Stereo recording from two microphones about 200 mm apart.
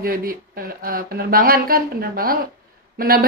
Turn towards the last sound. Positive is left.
turn(degrees=-45)  # may be behind; listen again after turning